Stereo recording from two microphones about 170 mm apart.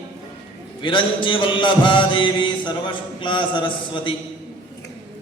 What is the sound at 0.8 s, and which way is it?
Mantra, 30° left (ahead or behind).